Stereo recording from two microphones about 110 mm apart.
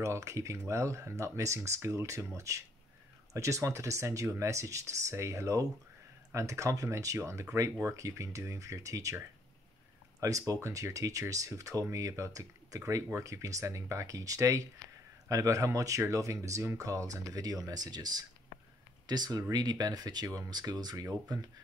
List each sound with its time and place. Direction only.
0.0 s speech: 30° right (ahead or behind)
10.2 s speech: 30° right (ahead or behind)